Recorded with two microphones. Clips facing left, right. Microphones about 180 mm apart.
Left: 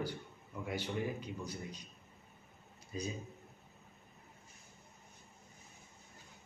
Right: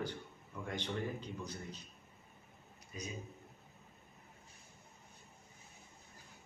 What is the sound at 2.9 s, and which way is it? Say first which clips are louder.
Speech: left 6 dB; 30° left (ahead or behind).